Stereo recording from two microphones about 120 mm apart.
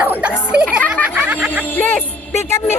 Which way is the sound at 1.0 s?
15° right (ahead or behind).